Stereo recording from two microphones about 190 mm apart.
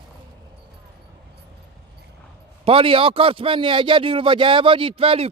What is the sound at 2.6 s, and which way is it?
A man's voice, 30° right (ahead or behind).